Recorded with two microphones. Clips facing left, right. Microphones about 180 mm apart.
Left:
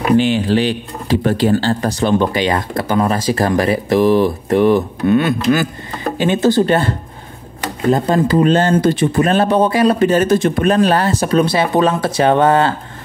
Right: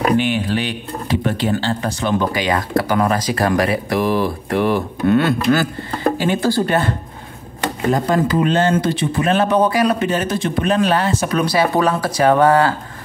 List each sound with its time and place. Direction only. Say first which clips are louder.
0.2 s speech: left 5 dB; 30° left (ahead or behind)
7.9 s speech: left 4 dB; 30° left (ahead or behind)
10.0 s speech: left 7 dB; 45° left (ahead or behind); by 12.7 s 25° left (ahead or behind)